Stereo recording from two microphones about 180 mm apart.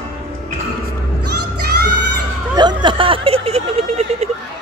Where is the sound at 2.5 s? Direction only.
25° right (ahead or behind).